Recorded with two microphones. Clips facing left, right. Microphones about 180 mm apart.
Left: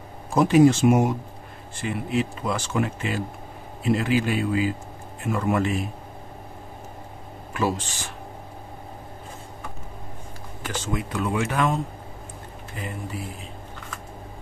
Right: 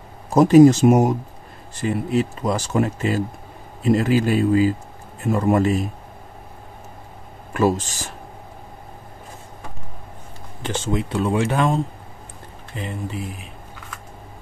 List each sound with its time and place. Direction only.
0.3 s speech: 40° right (ahead or behind)
7.5 s speech: 45° right (ahead or behind)
10.6 s speech: 25° right (ahead or behind)